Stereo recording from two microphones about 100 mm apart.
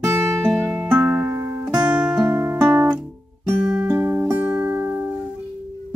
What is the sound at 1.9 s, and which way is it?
Music, 15° right (ahead or behind).